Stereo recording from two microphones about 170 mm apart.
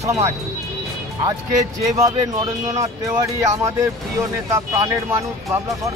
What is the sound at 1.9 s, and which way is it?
Speech, 20° right (ahead or behind).